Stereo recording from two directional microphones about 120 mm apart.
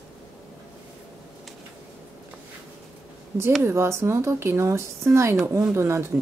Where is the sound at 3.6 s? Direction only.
20° right (ahead or behind).